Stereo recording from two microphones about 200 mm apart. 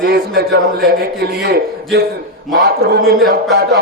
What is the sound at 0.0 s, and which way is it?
A man's voice, 55° right (ahead or behind).